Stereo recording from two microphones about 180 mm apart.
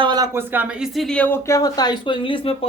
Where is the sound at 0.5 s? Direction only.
5° right (ahead or behind).